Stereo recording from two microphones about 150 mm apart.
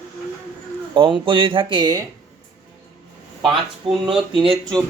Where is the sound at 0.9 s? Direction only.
35° right (ahead or behind).